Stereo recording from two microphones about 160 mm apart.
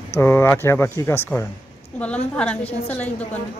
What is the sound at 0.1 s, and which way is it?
Speech, 15° left (ahead or behind).